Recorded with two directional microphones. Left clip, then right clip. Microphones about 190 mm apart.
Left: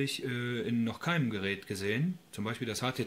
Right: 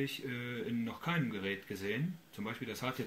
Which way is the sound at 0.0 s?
45° left (ahead or behind).